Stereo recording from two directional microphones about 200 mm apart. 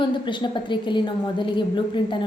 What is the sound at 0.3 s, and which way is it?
A woman's voice, 25° left (ahead or behind).